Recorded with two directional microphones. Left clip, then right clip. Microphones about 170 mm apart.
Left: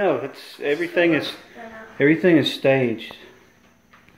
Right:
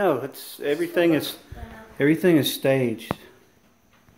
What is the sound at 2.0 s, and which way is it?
Speech, 15° right (ahead or behind).